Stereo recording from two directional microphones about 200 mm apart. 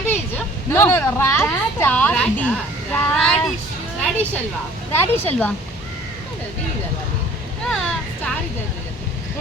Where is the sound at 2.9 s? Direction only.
5° left (ahead or behind).